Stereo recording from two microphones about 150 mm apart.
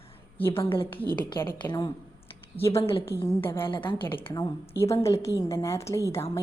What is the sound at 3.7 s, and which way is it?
Speech, 35° left (ahead or behind).